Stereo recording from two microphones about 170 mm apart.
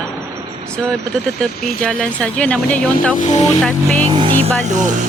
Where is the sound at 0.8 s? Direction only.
5° left (ahead or behind).